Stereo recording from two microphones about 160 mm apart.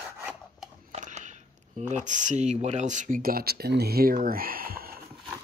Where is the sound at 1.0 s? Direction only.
50° right (ahead or behind).